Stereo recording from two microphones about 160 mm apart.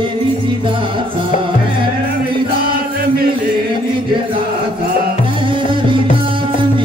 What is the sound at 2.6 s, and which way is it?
Chant, 70° right (ahead or behind).